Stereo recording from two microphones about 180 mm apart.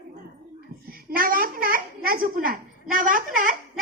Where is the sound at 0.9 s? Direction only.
55° right (ahead or behind).